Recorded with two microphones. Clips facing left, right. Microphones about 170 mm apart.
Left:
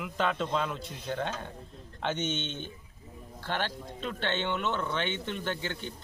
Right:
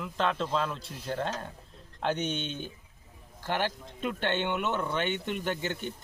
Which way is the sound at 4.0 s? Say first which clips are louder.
Right 3 dB; 10° right (ahead or behind).